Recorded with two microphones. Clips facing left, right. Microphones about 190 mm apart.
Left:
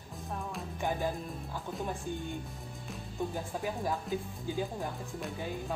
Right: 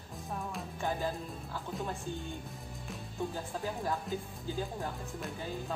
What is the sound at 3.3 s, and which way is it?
Music, 15° left (ahead or behind).